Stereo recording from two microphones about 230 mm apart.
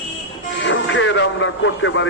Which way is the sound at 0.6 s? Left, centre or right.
Left.